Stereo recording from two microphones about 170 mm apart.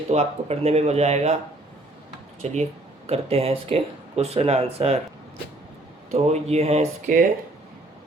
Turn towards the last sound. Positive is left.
turn(degrees=-45)  # may be behind; listen again after turning